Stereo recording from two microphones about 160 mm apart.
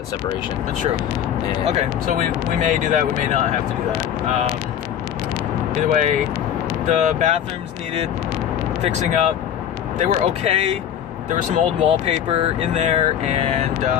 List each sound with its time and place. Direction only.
2.1 s speech: 50° right (ahead or behind)
5.9 s speech: 50° right (ahead or behind)
8.8 s speech: 45° right (ahead or behind)